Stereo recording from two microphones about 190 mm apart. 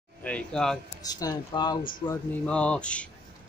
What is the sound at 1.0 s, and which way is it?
Speech, 20° left (ahead or behind).